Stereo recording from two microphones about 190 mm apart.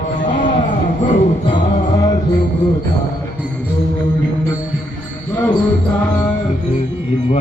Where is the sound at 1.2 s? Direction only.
30° left (ahead or behind).